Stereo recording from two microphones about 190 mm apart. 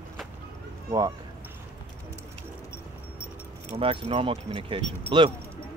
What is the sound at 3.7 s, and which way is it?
Speech, 30° right (ahead or behind).